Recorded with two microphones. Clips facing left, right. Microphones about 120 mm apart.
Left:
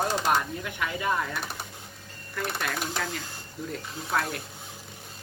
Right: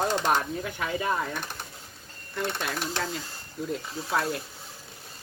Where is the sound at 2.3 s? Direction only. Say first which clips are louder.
Right 1 dB; 20° right (ahead or behind).